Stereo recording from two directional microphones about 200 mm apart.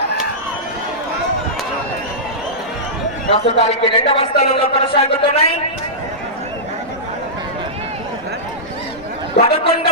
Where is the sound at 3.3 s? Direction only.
25° left (ahead or behind).